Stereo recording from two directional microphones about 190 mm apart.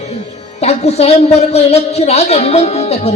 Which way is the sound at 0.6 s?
35° left (ahead or behind).